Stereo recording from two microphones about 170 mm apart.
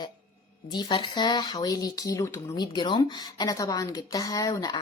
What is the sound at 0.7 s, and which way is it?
Speech, 25° left (ahead or behind).